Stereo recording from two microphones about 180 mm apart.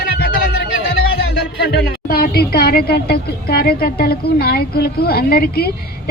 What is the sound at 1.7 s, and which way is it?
Speech, 55° left (ahead or behind).